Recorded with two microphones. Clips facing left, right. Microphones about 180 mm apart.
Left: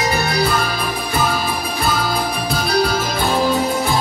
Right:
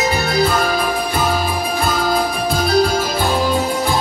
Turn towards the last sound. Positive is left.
turn(degrees=-45)  # may be behind; listen again after turning